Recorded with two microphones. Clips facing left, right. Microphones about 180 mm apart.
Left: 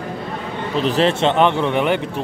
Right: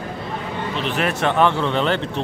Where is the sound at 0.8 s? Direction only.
35° left (ahead or behind); by 2.0 s 15° left (ahead or behind).